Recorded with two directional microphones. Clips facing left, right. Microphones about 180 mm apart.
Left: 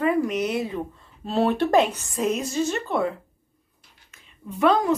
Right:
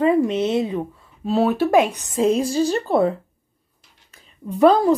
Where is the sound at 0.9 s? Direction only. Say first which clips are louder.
Right 3 dB; 5° right (ahead or behind).